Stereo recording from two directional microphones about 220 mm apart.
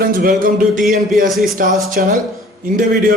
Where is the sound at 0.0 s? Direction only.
40° right (ahead or behind).